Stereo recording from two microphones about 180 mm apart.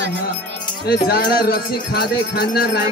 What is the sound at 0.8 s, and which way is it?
Music, 60° left (ahead or behind).